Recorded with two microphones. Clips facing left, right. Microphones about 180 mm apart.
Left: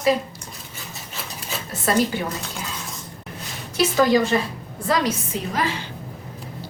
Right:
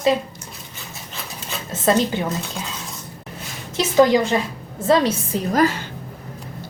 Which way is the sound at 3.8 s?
20° right (ahead or behind).